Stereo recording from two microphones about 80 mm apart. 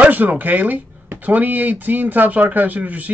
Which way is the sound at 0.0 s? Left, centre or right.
Right.